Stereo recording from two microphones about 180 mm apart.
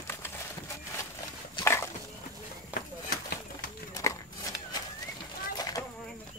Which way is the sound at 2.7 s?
55° left (ahead or behind).